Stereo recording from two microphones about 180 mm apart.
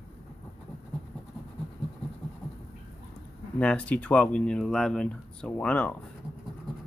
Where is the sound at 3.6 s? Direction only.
5° left (ahead or behind).